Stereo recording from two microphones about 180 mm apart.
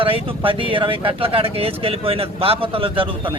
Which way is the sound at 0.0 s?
30° right (ahead or behind).